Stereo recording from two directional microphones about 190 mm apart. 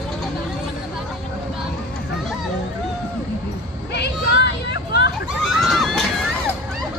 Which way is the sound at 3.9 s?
60° left (ahead or behind).